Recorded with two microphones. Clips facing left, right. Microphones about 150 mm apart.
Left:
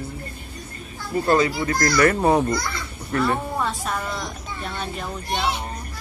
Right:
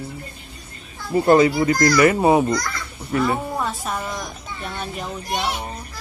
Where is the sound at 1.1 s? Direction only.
25° right (ahead or behind).